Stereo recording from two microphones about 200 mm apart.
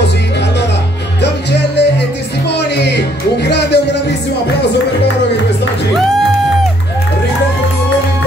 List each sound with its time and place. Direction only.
1.2 s music: 55° left (ahead or behind)